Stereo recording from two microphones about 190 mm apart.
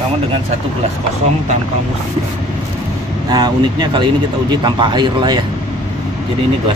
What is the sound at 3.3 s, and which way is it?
Speech, 20° right (ahead or behind).